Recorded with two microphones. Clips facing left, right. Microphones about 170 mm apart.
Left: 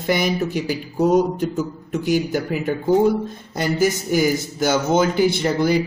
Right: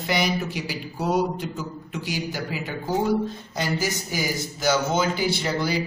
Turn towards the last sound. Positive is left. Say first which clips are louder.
# left 6 dB
turn(degrees=50)  # may be behind; listen again after turning